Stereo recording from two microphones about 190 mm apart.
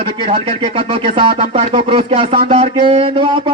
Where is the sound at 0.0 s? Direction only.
30° right (ahead or behind).